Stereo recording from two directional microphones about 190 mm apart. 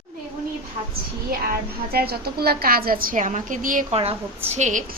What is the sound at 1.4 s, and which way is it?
A woman's voice, 55° right (ahead or behind).